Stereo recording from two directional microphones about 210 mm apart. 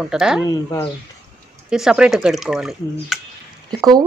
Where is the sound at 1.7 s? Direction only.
5° right (ahead or behind).